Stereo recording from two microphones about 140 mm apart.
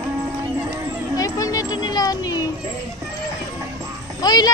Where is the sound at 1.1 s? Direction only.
25° left (ahead or behind).